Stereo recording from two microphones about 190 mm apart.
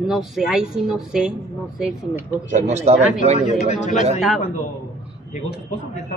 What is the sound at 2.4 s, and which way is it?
Speech, 40° right (ahead or behind).